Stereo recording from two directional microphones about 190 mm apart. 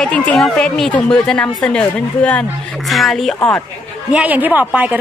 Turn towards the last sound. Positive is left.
turn(degrees=-10)  # may be behind; listen again after turning